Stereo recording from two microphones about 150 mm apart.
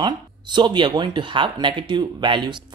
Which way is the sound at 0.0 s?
30° right (ahead or behind).